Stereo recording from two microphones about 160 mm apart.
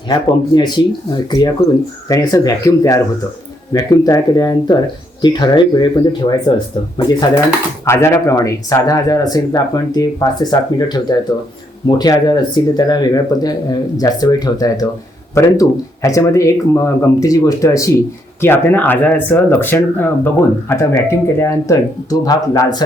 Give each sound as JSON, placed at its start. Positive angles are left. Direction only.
{"t": 0.1, "sound": "speech", "side_deg": 25}